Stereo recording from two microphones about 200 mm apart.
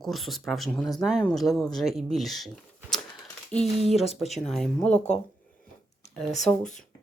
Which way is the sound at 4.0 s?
30° left (ahead or behind).